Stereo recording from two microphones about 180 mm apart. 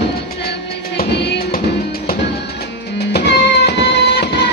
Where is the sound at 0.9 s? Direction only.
65° left (ahead or behind).